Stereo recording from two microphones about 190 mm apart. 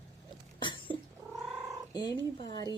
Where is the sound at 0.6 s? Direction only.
25° left (ahead or behind).